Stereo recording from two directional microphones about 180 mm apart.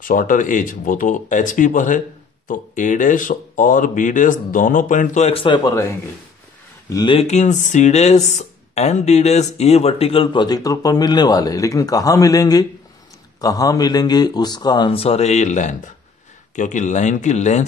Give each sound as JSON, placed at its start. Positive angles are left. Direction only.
{"t": 0.0, "sound": "speech", "side_deg": 50}
{"t": 6.9, "sound": "speech", "side_deg": 25}
{"t": 7.2, "sound": "speech", "side_deg": 45}